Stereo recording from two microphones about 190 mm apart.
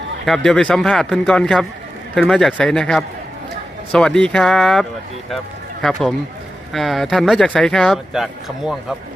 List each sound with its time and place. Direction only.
0.3 s speech: 5° left (ahead or behind)